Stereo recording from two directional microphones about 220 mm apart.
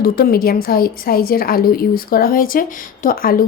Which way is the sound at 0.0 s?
45° left (ahead or behind).